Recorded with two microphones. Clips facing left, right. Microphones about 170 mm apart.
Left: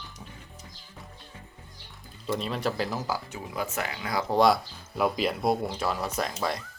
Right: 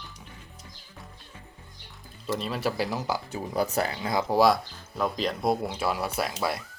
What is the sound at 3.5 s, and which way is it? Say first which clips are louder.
Speech: right 5 dB; 35° right (ahead or behind).